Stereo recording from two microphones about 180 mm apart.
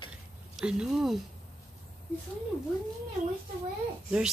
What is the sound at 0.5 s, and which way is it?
Speech, 5° right (ahead or behind).